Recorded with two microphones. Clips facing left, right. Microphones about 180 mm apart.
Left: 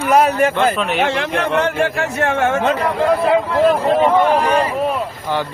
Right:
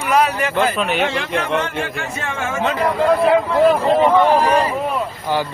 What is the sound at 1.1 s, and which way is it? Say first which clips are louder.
A man's voice: left 2 dB; 65° left (ahead or behind).